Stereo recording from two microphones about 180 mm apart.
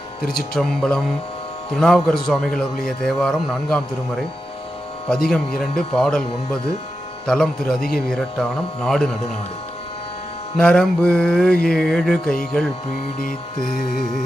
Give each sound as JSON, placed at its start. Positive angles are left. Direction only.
{"t": 0.3, "sound": "a man's voice", "side_deg": 0}
{"t": 5.3, "sound": "a man's voice", "side_deg": 5}
{"t": 10.6, "sound": "a man's voice", "side_deg": 5}
{"t": 13.7, "sound": "mantra", "side_deg": 50}